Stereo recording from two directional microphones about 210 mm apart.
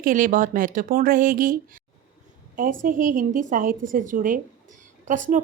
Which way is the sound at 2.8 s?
40° right (ahead or behind).